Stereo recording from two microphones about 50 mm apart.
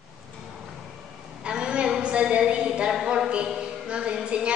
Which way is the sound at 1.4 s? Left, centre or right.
Centre.